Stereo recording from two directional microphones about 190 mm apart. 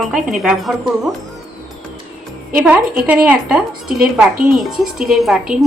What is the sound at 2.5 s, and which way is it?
A woman's voice, 5° right (ahead or behind).